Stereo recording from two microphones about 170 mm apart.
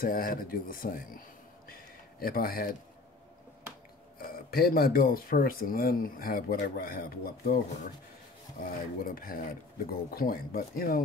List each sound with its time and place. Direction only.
0.0 s speech: 60° left (ahead or behind)
1.7 s a sound: 60° left (ahead or behind)
4.2 s speech: 60° left (ahead or behind)